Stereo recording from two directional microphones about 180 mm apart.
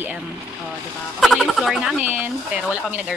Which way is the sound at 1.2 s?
Centre (ahead or behind).